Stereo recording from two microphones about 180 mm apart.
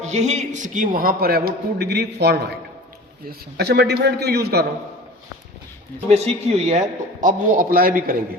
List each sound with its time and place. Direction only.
0.0 s a man's voice: 40° right (ahead or behind); by 4.6 s 60° right (ahead or behind)
6.1 s a man's voice: 35° right (ahead or behind); by 8.1 s 55° right (ahead or behind)